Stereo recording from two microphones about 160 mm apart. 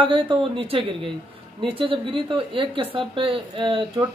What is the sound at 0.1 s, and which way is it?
Speech, 35° right (ahead or behind).